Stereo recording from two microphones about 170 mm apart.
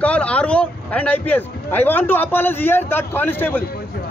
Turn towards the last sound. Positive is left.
turn(degrees=10)  # may be behind; listen again after turning